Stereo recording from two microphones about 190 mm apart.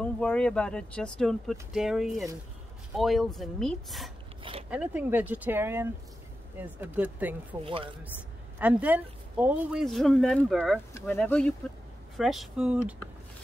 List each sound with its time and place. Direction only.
0.0 s speech: 5° left (ahead or behind)
4.4 s a sound: 30° right (ahead or behind)
4.6 s speech: 10° right (ahead or behind)
7.6 s speech: 30° right (ahead or behind)
8.5 s speech: 10° right (ahead or behind)